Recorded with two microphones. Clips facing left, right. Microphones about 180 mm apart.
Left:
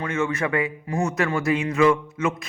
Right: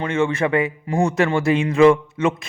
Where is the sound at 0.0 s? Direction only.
30° right (ahead or behind).